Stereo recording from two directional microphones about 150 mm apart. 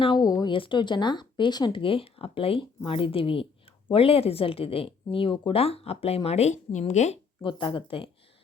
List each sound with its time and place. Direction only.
0.0 s speech: 30° left (ahead or behind); by 7.2 s 50° left (ahead or behind)
7.4 s speech: 35° left (ahead or behind)